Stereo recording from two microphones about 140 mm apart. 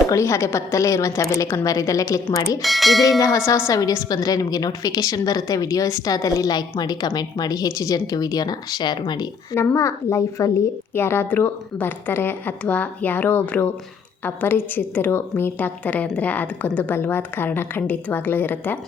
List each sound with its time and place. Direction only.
0.1 s a woman's voice: 20° left (ahead or behind)
2.6 s speech: centre (ahead or behind)
3.2 s a woman's voice: 20° left (ahead or behind)
9.6 s a woman's voice: 20° left (ahead or behind)